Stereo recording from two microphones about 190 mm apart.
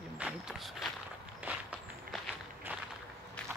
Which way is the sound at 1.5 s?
10° right (ahead or behind).